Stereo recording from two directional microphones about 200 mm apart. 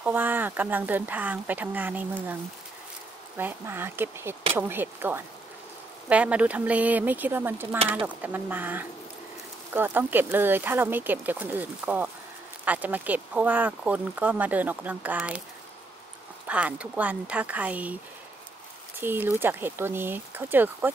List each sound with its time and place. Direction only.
0.0 s speech: 10° right (ahead or behind)
3.3 s speech: 10° right (ahead or behind)
16.4 s speech: 5° right (ahead or behind)
18.9 s speech: 10° right (ahead or behind)